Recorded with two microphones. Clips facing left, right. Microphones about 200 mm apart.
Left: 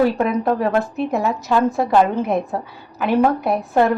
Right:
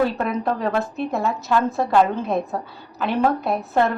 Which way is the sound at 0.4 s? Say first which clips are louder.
Left 4 dB; 5° left (ahead or behind).